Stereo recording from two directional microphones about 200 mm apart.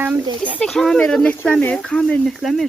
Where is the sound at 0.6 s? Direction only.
Centre (ahead or behind).